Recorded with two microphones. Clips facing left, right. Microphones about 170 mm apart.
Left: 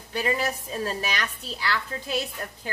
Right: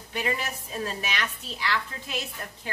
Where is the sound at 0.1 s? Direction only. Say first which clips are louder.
Left 4 dB; 35° left (ahead or behind).